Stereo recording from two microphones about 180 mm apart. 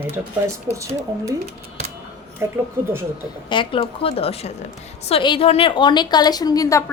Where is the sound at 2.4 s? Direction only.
15° right (ahead or behind).